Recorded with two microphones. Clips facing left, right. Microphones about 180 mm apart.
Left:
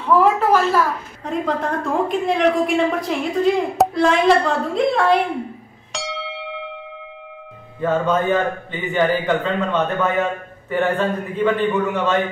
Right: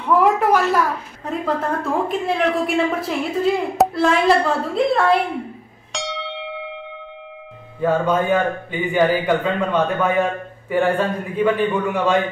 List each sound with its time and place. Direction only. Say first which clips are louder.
0.4 s a man's voice: even; 15° right (ahead or behind)
1.2 s a woman's voice: left 1 dB; 5° right (ahead or behind)
5.9 s bell: right 1 dB; centre (ahead or behind)
7.8 s a man's voice: even; 10° right (ahead or behind)